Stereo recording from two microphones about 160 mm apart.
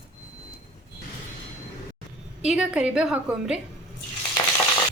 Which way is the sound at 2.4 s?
5° right (ahead or behind).